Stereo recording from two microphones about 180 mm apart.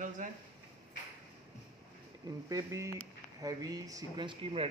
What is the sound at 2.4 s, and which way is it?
Speech, 20° right (ahead or behind).